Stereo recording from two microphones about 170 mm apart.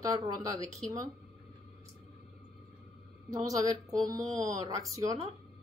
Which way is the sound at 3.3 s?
20° right (ahead or behind).